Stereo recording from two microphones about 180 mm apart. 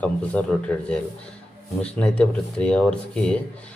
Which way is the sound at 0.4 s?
5° left (ahead or behind).